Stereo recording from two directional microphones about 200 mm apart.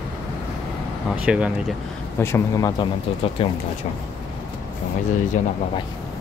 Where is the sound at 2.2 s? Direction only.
15° left (ahead or behind).